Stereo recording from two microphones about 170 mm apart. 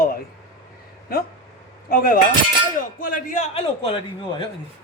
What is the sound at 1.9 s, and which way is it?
Speech, 55° left (ahead or behind).